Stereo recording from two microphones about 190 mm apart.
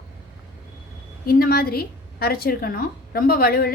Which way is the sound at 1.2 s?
50° left (ahead or behind).